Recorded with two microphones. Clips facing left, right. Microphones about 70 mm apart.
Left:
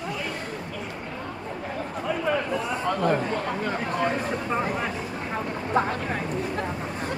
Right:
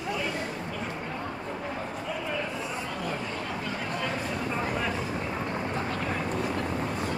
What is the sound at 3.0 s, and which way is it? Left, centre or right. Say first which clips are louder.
Speech: left 9 dB; left.